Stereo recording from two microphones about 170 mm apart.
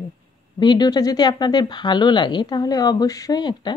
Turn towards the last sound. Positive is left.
turn(degrees=25)  # may be behind; listen again after turning